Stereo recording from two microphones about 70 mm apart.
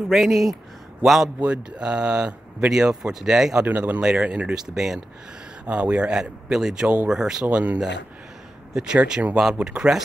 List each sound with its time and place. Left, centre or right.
0.1 s speech: centre
1.4 s speech: centre
3.6 s speech: right
4.6 s speech: centre
5.7 s speech: centre
7.4 s speech: right
8.7 s speech: centre